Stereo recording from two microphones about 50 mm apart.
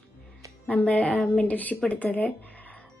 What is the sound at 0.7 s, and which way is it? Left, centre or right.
A woman's voice, left.